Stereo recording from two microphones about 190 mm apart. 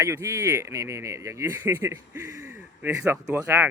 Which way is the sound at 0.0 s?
15° right (ahead or behind).